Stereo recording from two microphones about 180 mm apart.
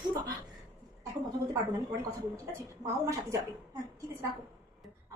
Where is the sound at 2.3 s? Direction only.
20° right (ahead or behind).